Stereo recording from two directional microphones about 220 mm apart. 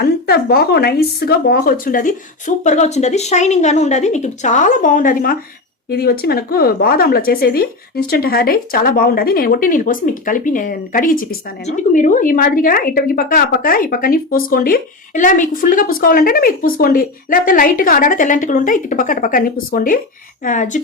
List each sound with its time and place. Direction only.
0.0 s speech: 45° left (ahead or behind)